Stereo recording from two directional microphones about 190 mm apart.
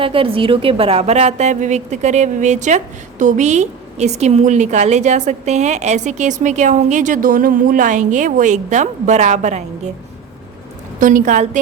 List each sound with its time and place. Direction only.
0.0 s a woman's voice: 30° right (ahead or behind)
11.0 s a woman's voice: 45° right (ahead or behind)